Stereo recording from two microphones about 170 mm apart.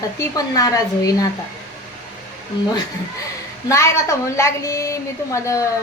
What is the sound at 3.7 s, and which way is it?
A woman's voice, 15° left (ahead or behind).